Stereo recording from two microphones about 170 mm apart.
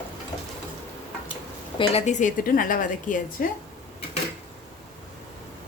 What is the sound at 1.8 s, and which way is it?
A woman's voice, 35° left (ahead or behind).